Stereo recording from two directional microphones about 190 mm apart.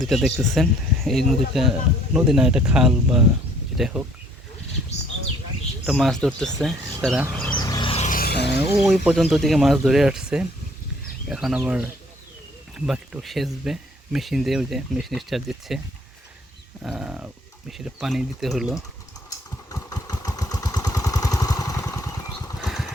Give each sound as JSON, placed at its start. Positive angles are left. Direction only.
{"t": 0.0, "sound": "speech", "side_deg": 0}
{"t": 5.8, "sound": "speech", "side_deg": 0}
{"t": 7.5, "sound": "vehicle", "side_deg": 20}
{"t": 8.2, "sound": "music", "side_deg": 60}
{"t": 8.8, "sound": "speech", "side_deg": 0}
{"t": 16.8, "sound": "speech", "side_deg": -5}
{"t": 19.3, "sound": "vehicle", "side_deg": 15}
{"t": 22.6, "sound": "vehicle", "side_deg": 0}